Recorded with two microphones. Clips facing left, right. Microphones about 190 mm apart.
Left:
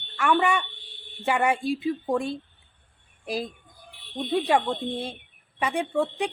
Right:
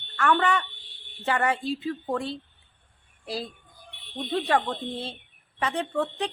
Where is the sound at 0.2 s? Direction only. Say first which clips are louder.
Left 1 dB; 10° left (ahead or behind).